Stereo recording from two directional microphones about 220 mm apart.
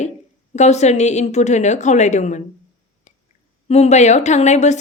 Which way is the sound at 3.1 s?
30° left (ahead or behind).